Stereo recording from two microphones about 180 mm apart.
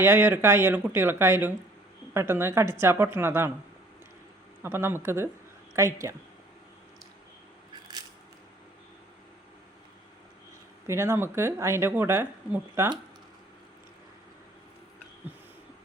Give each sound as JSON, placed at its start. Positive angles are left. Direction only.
{"t": 0.0, "sound": "speech", "side_deg": -10}
{"t": 4.6, "sound": "speech", "side_deg": -15}
{"t": 10.8, "sound": "speech", "side_deg": -15}